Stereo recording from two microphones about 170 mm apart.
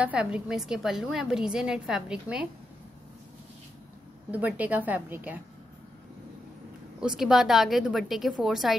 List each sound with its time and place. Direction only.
0.0 s a woman's voice: 5° right (ahead or behind)
4.3 s a woman's voice: 10° right (ahead or behind)
7.0 s a woman's voice: 5° right (ahead or behind)